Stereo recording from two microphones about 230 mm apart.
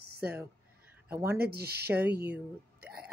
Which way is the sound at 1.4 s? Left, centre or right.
Right.